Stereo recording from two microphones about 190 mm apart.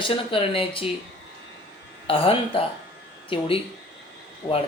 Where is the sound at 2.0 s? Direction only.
30° left (ahead or behind).